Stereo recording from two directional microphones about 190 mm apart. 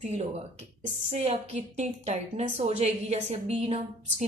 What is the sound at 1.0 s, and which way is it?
A woman's voice, 35° right (ahead or behind).